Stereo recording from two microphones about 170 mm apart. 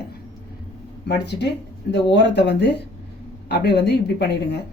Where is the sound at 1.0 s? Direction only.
85° left.